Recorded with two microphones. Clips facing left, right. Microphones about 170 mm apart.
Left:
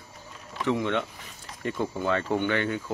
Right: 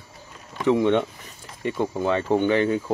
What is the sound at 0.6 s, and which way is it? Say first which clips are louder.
Speech: right 7 dB; 25° right (ahead or behind).